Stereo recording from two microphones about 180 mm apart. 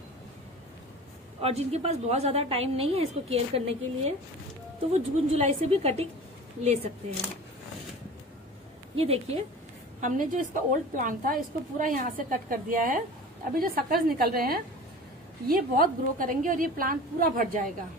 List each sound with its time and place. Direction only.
1.4 s a woman's voice: 35° right (ahead or behind)
8.9 s a woman's voice: 35° right (ahead or behind)
9.9 s a woman's voice: 45° right (ahead or behind)